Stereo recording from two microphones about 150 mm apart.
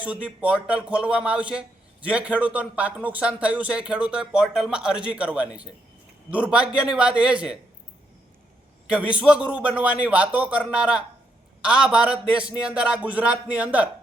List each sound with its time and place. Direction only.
0.0 s a man's voice: 10° right (ahead or behind)
8.9 s a man's voice: 10° right (ahead or behind)